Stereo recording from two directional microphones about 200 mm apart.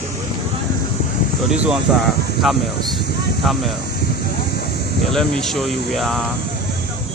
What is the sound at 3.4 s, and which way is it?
Speech, centre (ahead or behind).